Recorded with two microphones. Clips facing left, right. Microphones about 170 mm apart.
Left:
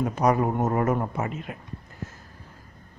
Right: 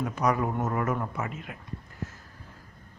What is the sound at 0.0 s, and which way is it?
Speech, 30° left (ahead or behind).